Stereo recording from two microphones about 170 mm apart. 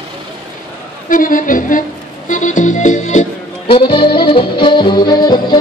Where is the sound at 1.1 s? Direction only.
55° left (ahead or behind).